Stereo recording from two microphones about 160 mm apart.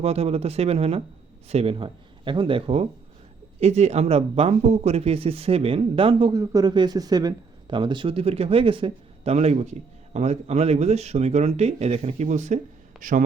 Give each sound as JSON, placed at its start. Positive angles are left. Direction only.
{"t": 0.0, "sound": "speech", "side_deg": -40}
{"t": 6.4, "sound": "speech", "side_deg": -20}